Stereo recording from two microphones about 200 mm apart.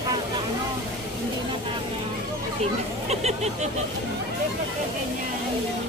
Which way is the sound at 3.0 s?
35° right (ahead or behind).